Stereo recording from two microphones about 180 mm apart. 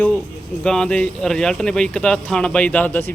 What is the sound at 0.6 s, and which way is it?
Speech, 5° left (ahead or behind).